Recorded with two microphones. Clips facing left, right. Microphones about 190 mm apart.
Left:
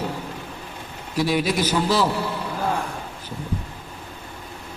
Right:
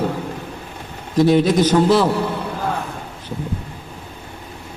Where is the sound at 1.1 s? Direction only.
20° right (ahead or behind).